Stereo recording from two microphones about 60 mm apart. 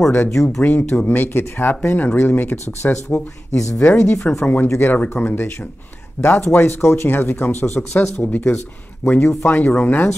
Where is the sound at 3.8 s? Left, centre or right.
Left.